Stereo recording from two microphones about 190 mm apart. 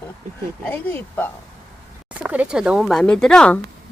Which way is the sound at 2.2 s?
5° right (ahead or behind).